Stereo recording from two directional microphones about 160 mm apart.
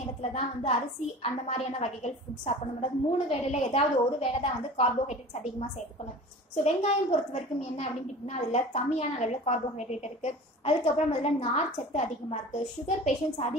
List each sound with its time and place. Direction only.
0.2 s a woman's voice: 40° left (ahead or behind)
6.5 s a woman's voice: 45° left (ahead or behind)
8.3 s a woman's voice: 45° left (ahead or behind)